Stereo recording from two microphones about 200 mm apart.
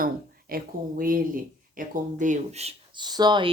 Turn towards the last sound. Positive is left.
turn(degrees=-20)  # may be behind; listen again after turning